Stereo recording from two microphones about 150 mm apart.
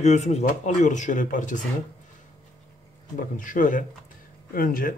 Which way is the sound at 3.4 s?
60° left (ahead or behind).